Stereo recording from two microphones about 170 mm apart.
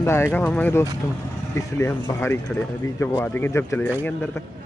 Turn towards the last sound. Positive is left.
turn(degrees=10)  # may be behind; listen again after turning